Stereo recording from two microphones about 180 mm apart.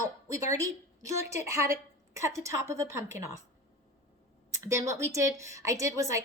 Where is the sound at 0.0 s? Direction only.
15° right (ahead or behind).